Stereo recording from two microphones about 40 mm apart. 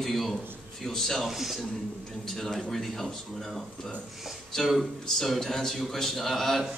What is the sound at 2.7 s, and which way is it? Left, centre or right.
Speech, centre.